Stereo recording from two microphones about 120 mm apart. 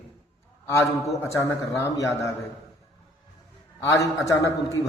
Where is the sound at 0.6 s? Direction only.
20° left (ahead or behind).